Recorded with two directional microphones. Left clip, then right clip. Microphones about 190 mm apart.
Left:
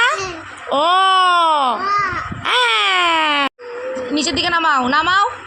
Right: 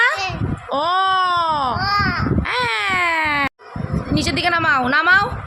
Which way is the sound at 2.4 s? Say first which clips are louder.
Left 8 dB; 5° left (ahead or behind).